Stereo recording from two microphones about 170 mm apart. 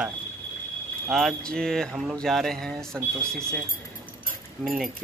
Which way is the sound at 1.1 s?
Centre (ahead or behind).